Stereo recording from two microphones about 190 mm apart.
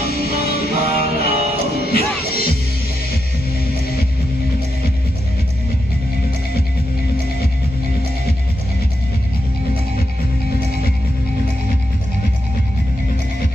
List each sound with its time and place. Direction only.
0.0 s music: 55° left (ahead or behind)
0.8 s music: 35° right (ahead or behind)
2.1 s music: 55° left (ahead or behind)